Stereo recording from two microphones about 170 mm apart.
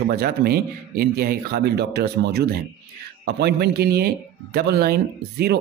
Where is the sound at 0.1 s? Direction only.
65° right (ahead or behind).